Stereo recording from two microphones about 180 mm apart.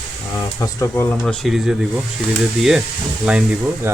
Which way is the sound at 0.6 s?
15° left (ahead or behind).